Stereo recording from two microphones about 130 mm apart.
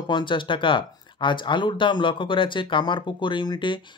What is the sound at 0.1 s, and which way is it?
Speech, 40° left (ahead or behind).